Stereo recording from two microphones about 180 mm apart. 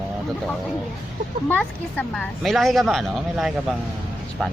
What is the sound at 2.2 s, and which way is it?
A woman's voice, centre (ahead or behind).